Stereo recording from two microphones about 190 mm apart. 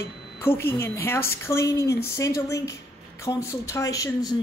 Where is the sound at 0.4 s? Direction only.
10° left (ahead or behind).